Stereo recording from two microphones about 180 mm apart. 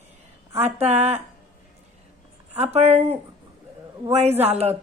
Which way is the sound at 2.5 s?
35° right (ahead or behind).